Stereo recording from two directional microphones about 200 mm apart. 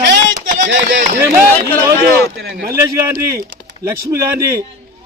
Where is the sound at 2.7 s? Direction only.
15° right (ahead or behind).